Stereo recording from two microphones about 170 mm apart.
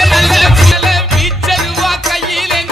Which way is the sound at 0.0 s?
Centre (ahead or behind).